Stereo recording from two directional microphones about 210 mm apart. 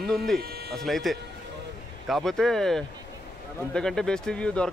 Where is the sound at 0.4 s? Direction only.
45° right (ahead or behind).